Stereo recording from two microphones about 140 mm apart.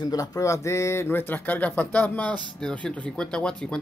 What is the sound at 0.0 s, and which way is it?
Speech, 25° left (ahead or behind).